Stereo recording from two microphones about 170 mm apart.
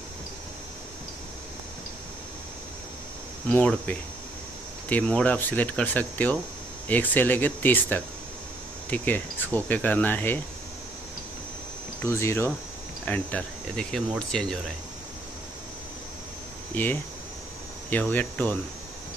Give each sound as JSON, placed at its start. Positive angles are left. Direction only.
{"t": 3.4, "sound": "speech", "side_deg": 5}
{"t": 12.0, "sound": "speech", "side_deg": 15}
{"t": 16.7, "sound": "speech", "side_deg": 10}